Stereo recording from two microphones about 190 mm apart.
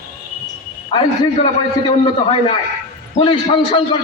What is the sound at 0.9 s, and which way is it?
Speech, 25° left (ahead or behind).